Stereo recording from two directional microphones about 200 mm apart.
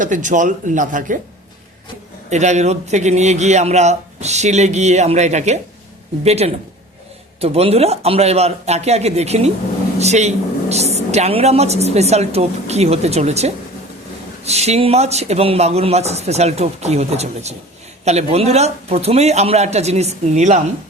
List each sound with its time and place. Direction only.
0.0 s a woman's voice: 40° right (ahead or behind)
2.3 s a woman's voice: 35° right (ahead or behind)